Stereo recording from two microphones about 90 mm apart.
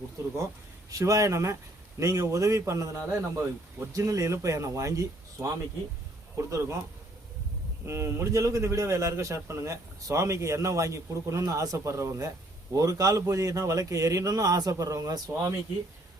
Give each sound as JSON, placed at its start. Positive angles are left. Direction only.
{"t": 0.9, "sound": "a man's voice", "side_deg": -40}
{"t": 7.9, "sound": "a man's voice", "side_deg": -30}